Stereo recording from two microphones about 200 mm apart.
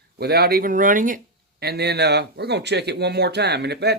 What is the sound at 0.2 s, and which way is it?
Speech, 50° right (ahead or behind).